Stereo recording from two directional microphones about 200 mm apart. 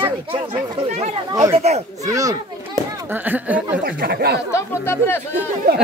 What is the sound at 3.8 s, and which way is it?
Speech, 50° right (ahead or behind).